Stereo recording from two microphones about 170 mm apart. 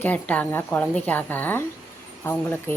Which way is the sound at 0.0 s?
10° left (ahead or behind).